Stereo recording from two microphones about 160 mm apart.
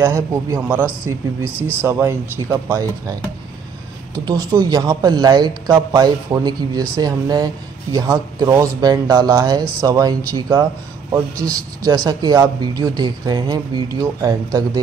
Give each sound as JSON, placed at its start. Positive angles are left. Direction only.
{"t": 0.0, "sound": "speech", "side_deg": -20}